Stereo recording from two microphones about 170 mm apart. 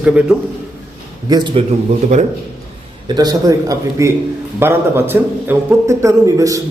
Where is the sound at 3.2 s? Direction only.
20° right (ahead or behind).